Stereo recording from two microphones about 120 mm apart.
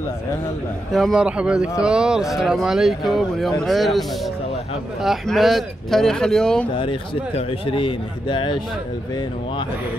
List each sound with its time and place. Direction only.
0.9 s speech: 5° right (ahead or behind)
5.0 s speech: centre (ahead or behind)
6.7 s a man's voice: 45° left (ahead or behind)